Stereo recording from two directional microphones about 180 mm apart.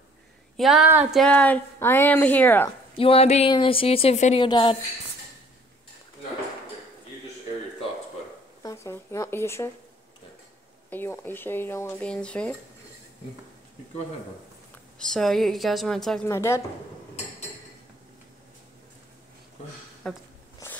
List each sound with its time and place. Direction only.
0.6 s a woman's voice: centre (ahead or behind)
1.2 s speech: 10° left (ahead or behind)
3.0 s a woman's voice: 30° left (ahead or behind)
8.6 s speech: 15° left (ahead or behind)
10.9 s speech: 10° left (ahead or behind)
15.0 s a woman's voice: centre (ahead or behind)
16.3 s speech: 15° left (ahead or behind)
20.1 s a woman's voice: 5° left (ahead or behind)
20.6 s a sound: 15° left (ahead or behind)